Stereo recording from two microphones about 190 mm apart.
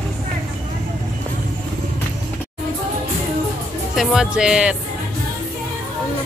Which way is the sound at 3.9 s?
5° right (ahead or behind).